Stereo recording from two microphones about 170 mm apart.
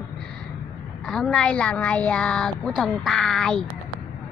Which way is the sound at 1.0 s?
Centre (ahead or behind).